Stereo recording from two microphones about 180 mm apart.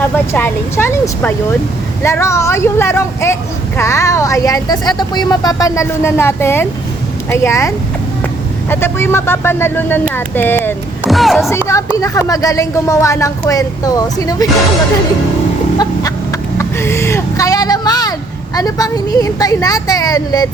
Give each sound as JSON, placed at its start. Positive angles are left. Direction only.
{"t": 0.3, "sound": "speech", "side_deg": 10}
{"t": 8.7, "sound": "speech", "side_deg": 15}
{"t": 11.0, "sound": "a sound", "side_deg": 0}
{"t": 11.3, "sound": "speech", "side_deg": 15}
{"t": 16.6, "sound": "vehicle", "side_deg": 15}
{"t": 18.5, "sound": "speech", "side_deg": 20}